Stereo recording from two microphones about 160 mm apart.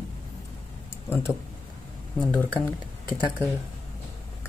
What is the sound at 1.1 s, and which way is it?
Speech, 15° left (ahead or behind).